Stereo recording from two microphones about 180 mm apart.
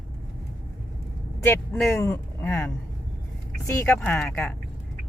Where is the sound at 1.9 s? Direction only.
15° left (ahead or behind).